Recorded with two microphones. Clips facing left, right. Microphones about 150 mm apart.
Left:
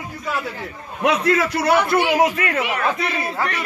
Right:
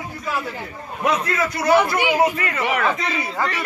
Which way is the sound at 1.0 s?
80° left.